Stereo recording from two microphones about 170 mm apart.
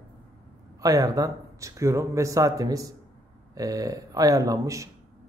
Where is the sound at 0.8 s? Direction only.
20° right (ahead or behind).